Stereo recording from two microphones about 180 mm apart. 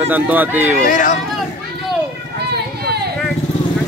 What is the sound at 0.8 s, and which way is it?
Speech, 45° left (ahead or behind).